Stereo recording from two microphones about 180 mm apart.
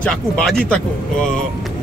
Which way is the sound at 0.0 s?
5° left (ahead or behind).